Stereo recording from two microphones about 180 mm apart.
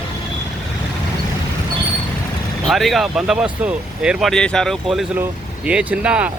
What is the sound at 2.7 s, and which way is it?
Speech, centre (ahead or behind).